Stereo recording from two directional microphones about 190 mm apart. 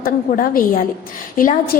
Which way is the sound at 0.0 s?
50° left (ahead or behind).